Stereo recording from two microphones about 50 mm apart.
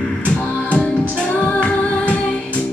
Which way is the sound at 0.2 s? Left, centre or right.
Left.